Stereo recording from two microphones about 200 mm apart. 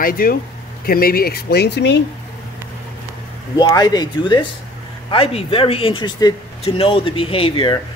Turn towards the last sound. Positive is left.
turn(degrees=25)  # may be behind; listen again after turning